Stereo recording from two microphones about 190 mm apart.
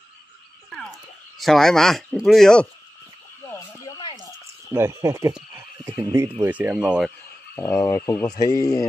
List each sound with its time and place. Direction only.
0.7 s speech: centre (ahead or behind)
3.5 s a sound: 15° left (ahead or behind)
4.7 s speech: 15° right (ahead or behind)
5.5 s a sound: 15° right (ahead or behind)
6.4 s speech: 10° right (ahead or behind)
7.5 s speech: 15° left (ahead or behind)